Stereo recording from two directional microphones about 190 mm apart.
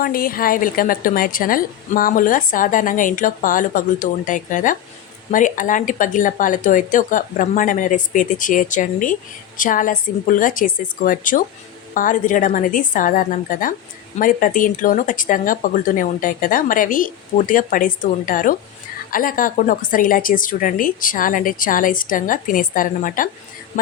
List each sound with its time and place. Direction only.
0.0 s a woman's voice: 50° left (ahead or behind)